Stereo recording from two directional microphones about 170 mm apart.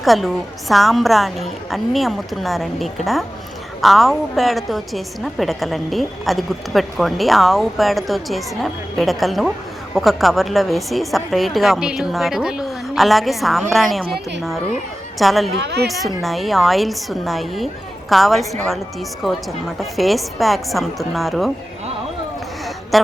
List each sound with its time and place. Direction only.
0.0 s a woman's voice: centre (ahead or behind)
15.2 s a woman's voice: centre (ahead or behind)
15.5 s a woman's voice: 80° right
15.9 s a woman's voice: centre (ahead or behind)
19.8 s a woman's voice: centre (ahead or behind)